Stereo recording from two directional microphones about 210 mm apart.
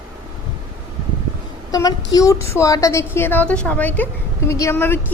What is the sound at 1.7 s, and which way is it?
A woman's voice, 15° left (ahead or behind).